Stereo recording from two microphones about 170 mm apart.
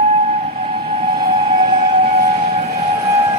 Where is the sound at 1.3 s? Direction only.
35° right (ahead or behind).